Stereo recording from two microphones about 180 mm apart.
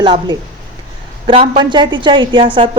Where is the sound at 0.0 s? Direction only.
25° right (ahead or behind).